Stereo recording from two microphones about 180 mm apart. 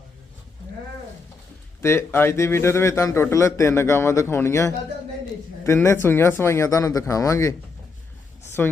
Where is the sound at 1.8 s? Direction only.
15° left (ahead or behind).